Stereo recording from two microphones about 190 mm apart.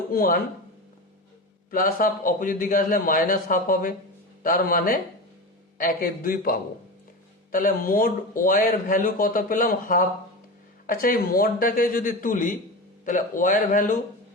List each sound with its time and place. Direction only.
0.1 s speech: 50° left (ahead or behind)
1.7 s speech: 50° left (ahead or behind)